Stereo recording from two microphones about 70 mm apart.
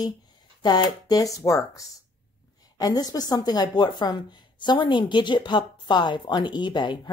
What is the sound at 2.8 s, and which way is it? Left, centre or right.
A woman's voice, left.